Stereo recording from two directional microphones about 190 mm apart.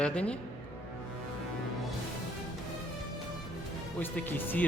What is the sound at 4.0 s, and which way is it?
Speech, 10° left (ahead or behind).